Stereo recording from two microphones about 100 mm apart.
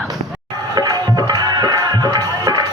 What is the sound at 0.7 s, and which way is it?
Music, 45° right (ahead or behind).